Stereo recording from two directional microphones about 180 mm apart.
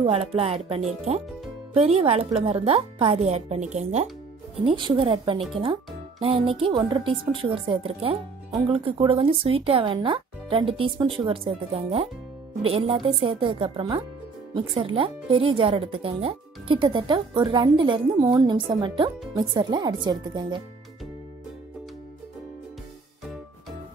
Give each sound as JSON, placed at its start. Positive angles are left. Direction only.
{"t": 0.0, "sound": "speech", "side_deg": -35}
{"t": 4.6, "sound": "speech", "side_deg": -30}